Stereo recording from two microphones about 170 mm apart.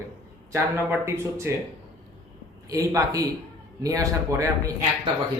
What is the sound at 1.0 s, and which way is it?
Speech, 15° right (ahead or behind).